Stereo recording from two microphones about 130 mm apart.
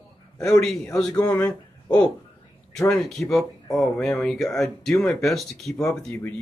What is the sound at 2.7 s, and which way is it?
Speech, 5° left (ahead or behind).